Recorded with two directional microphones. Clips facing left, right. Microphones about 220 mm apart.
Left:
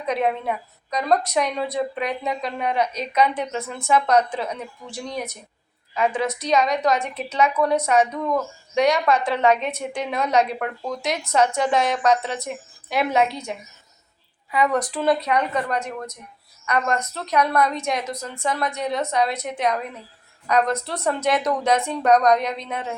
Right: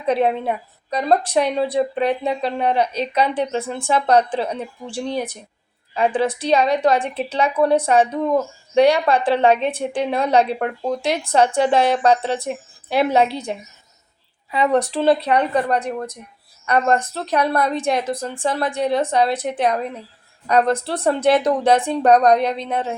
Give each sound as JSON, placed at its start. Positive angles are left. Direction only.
{"t": 0.0, "sound": "a woman's voice", "side_deg": -30}